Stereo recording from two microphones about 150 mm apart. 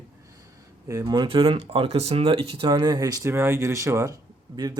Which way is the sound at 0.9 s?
20° right (ahead or behind).